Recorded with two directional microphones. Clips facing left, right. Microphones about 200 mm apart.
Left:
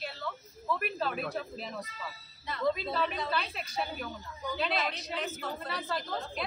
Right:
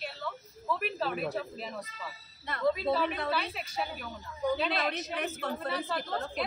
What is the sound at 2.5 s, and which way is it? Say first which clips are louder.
Speech: right 1 dB; 60° right (ahead or behind).